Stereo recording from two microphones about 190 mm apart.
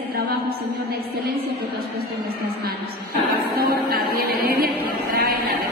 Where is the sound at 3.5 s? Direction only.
50° right (ahead or behind).